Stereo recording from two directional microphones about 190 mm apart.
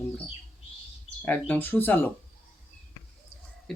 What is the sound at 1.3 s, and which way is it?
Speech, 10° left (ahead or behind).